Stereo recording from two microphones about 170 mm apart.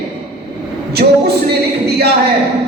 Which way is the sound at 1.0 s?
45° right (ahead or behind).